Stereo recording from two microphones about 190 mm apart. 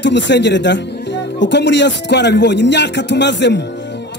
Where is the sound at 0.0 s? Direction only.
65° left (ahead or behind).